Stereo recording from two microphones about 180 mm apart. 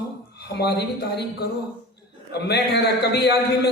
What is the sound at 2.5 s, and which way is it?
A man's voice, 65° left (ahead or behind).